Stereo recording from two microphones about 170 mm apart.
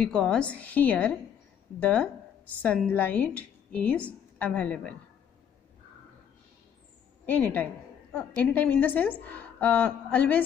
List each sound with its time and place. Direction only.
0.0 s a woman's voice: 5° left (ahead or behind)
7.2 s a woman's voice: 10° left (ahead or behind)